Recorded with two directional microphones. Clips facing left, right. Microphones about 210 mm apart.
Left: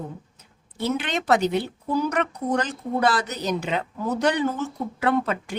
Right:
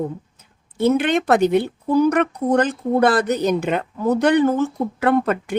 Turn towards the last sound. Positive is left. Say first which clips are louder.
# right 5 dB
turn(degrees=-55)  # may be behind; listen again after turning